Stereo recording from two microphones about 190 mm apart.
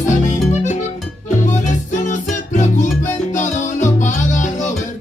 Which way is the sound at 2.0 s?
40° left (ahead or behind).